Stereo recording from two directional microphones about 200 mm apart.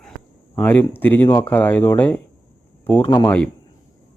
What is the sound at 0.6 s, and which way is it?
Speech, 10° left (ahead or behind).